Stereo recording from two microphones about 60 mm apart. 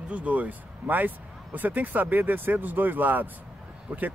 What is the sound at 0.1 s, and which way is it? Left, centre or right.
Speech, right.